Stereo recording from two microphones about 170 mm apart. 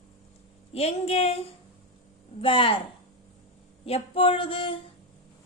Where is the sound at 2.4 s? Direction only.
30° left (ahead or behind).